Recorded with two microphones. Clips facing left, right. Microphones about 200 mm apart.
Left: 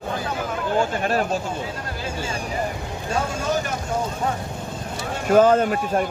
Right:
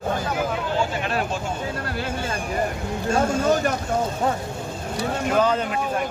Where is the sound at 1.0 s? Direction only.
40° left (ahead or behind).